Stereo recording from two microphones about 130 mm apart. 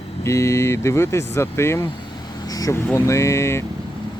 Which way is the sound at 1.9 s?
35° left (ahead or behind).